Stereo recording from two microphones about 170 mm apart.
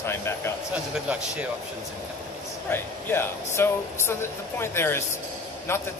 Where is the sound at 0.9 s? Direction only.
5° right (ahead or behind).